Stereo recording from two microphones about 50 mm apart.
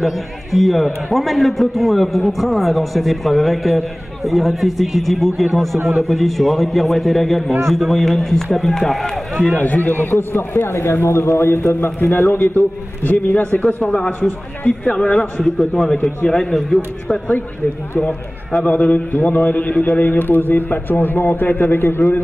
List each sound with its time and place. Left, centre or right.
0.0 s a man's voice: centre
9.6 s a man's voice: left
10.1 s a man's voice: left
13.8 s a man's voice: centre
18.7 s a man's voice: left